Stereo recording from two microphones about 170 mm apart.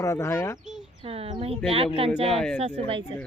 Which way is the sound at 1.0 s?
35° right (ahead or behind).